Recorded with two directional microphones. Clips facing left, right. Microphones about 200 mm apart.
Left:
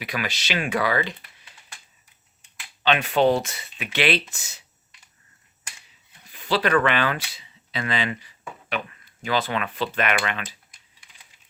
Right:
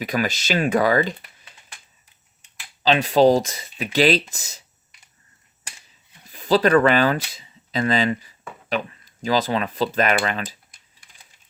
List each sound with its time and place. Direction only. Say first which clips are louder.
0.0 s speech: right 6 dB; 40° right (ahead or behind)
2.8 s speech: right 4 dB; 30° right (ahead or behind)
6.2 s speech: right 6 dB; 40° right (ahead or behind)